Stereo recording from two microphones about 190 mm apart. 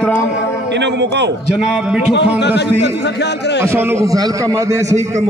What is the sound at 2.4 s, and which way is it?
A man's voice, 65° left (ahead or behind).